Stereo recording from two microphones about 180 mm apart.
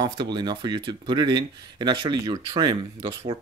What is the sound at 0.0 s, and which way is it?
Speech, 25° right (ahead or behind).